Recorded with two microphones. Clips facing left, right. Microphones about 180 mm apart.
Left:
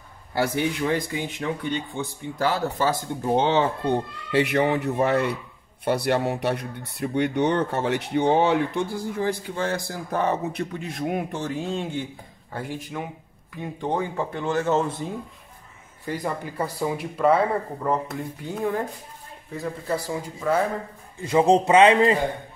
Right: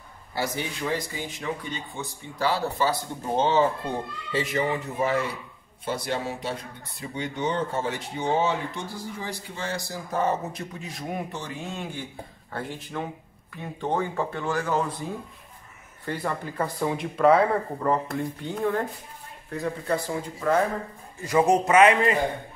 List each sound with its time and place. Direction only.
0.3 s speech: 60° left (ahead or behind)
4.3 s speech: 65° left (ahead or behind)
11.7 s speech: 25° left (ahead or behind)
12.5 s speech: 10° left (ahead or behind)
16.1 s speech: 10° left (ahead or behind)
18.6 s speech: 15° left (ahead or behind)
19.5 s speech: 5° left (ahead or behind)
21.2 s speech: 25° left (ahead or behind)